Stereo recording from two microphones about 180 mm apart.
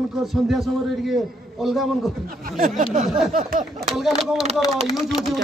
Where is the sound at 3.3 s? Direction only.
50° right (ahead or behind).